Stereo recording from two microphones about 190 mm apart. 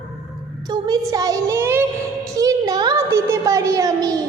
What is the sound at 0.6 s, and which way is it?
A woman's voice, 20° right (ahead or behind).